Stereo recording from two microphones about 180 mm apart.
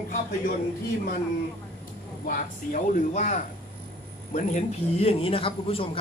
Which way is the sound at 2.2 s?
50° left (ahead or behind).